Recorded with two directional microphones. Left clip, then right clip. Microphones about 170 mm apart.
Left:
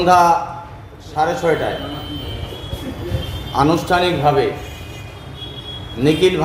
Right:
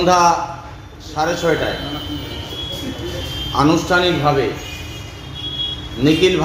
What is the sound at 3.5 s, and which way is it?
Speech, 15° left (ahead or behind).